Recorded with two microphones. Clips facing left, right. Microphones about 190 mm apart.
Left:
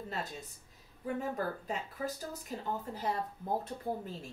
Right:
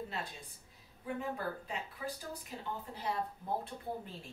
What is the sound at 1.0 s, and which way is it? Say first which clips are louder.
A woman's voice: left 3 dB; 45° left (ahead or behind).